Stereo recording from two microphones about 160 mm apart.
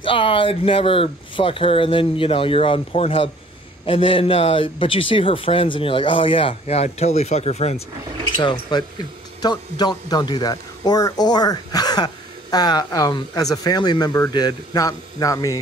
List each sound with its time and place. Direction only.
0.0 s speech: 35° left (ahead or behind)
8.4 s speech: 30° left (ahead or behind)